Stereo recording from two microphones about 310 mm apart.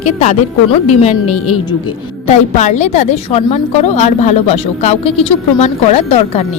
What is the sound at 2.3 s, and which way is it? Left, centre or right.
Speech, left.